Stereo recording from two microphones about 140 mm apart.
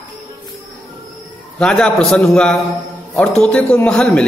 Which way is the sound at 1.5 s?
5° left (ahead or behind).